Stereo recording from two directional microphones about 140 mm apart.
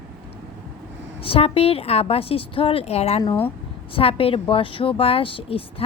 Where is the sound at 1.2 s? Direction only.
45° left (ahead or behind).